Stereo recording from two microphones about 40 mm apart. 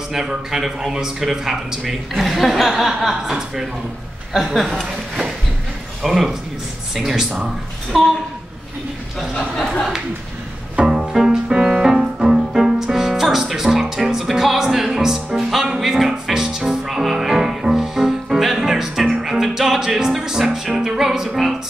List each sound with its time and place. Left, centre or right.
0.5 s music: centre
1.8 s a woman's voice: centre
2.9 s music: centre
4.6 s speech: centre
6.0 s music: centre
7.9 s a woman's voice: centre
9.3 s speech: centre
10.9 s music: centre